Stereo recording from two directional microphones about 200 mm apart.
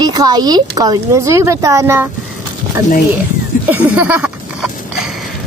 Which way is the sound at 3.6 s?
10° right (ahead or behind).